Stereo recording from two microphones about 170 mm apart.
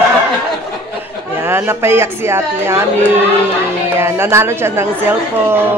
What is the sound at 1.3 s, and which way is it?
A woman's voice, 15° right (ahead or behind).